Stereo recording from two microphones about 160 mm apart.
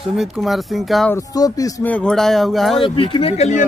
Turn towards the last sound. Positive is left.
turn(degrees=45)  # may be behind; listen again after turning